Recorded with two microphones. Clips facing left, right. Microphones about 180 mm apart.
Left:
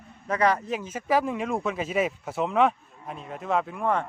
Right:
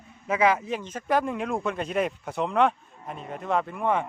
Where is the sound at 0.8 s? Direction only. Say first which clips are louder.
Left 1 dB; 5° left (ahead or behind).